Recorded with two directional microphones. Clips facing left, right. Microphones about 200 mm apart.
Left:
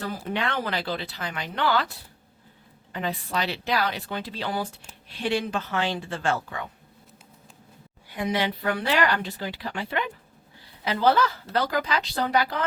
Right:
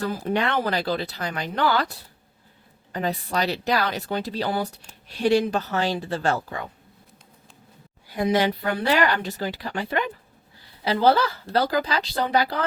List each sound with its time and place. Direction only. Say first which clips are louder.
0.3 s speech: right 5 dB; 40° right (ahead or behind)
2.9 s speech: right 3 dB; 40° right (ahead or behind)
8.1 s speech: right 5 dB; 40° right (ahead or behind)
10.8 s speech: right 2 dB; 35° right (ahead or behind)